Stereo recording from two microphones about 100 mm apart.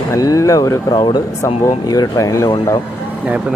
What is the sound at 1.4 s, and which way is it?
Speech, 35° left (ahead or behind).